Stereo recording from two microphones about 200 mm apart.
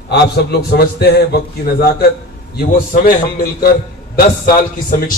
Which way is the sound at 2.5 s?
50° left (ahead or behind).